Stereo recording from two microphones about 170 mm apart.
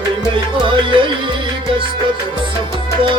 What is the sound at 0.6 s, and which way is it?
Music, 30° right (ahead or behind).